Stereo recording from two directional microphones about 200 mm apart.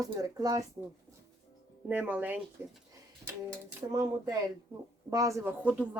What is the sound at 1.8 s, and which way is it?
Speech, 10° right (ahead or behind).